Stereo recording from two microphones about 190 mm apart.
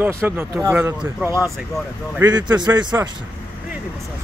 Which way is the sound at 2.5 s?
20° right (ahead or behind).